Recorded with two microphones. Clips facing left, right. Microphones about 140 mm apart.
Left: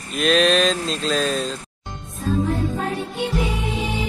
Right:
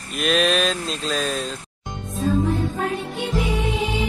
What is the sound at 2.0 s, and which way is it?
Music, 90° right.